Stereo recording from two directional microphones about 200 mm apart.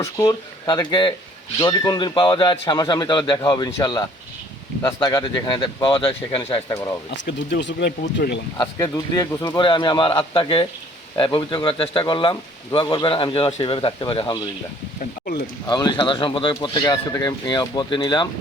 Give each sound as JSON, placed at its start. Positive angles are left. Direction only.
{"t": 0.0, "sound": "a man's voice", "side_deg": 15}
{"t": 7.3, "sound": "speech", "side_deg": 60}
{"t": 8.6, "sound": "a man's voice", "side_deg": 15}
{"t": 15.6, "sound": "a man's voice", "side_deg": 20}